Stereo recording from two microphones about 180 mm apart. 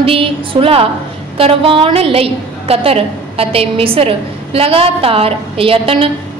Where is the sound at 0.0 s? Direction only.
30° right (ahead or behind).